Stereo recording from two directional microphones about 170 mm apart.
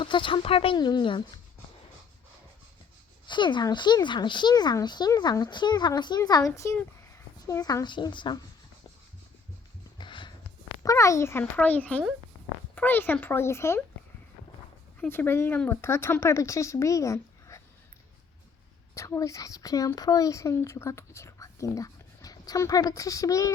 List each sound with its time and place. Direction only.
0.0 s speech: 30° left (ahead or behind)
3.2 s speech: 25° left (ahead or behind)
10.0 s a sound: 30° left (ahead or behind)
10.8 s speech: 20° left (ahead or behind)
15.0 s speech: 10° left (ahead or behind)
18.9 s speech: 20° left (ahead or behind)